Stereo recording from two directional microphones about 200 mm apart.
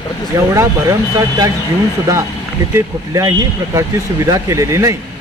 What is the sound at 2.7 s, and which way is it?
Speech, 15° right (ahead or behind).